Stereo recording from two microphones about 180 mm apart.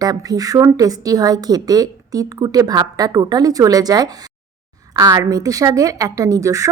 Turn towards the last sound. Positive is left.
turn(degrees=-20)  # may be behind; listen again after turning